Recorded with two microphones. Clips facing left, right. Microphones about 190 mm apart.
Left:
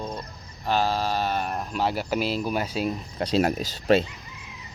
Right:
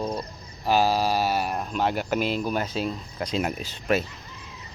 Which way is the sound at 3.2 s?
35° left (ahead or behind).